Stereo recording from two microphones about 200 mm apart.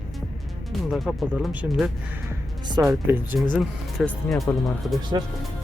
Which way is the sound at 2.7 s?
15° right (ahead or behind).